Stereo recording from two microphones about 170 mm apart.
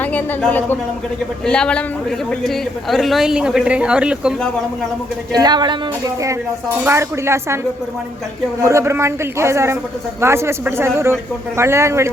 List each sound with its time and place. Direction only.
0.0 s a woman's voice: 10° left (ahead or behind)
5.3 s speech: 25° right (ahead or behind)
6.8 s a man's voice: 15° right (ahead or behind)
8.6 s a man's voice: 15° right (ahead or behind)